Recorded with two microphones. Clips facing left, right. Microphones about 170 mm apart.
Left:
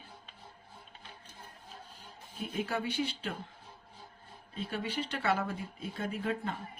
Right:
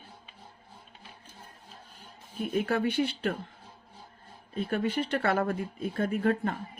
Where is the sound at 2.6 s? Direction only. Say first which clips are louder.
Right 5 dB; 60° right (ahead or behind).